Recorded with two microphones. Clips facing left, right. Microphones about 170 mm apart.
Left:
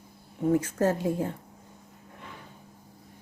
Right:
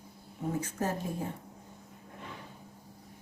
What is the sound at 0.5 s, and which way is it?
Speech, 85° left.